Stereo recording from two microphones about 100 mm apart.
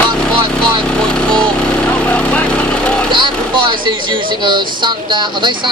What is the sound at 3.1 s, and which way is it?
Speech, 50° right (ahead or behind).